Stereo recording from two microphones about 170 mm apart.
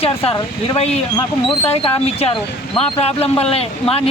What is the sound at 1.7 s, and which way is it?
Speech, 35° left (ahead or behind).